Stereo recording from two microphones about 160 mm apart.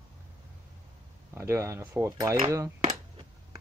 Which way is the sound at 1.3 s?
15° right (ahead or behind).